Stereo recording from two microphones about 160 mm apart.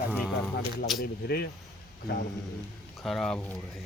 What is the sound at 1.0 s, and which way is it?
Speech, 80° left.